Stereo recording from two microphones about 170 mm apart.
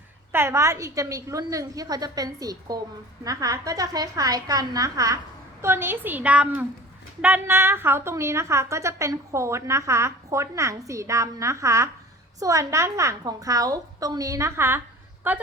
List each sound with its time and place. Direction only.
0.3 s a woman's voice: 15° right (ahead or behind)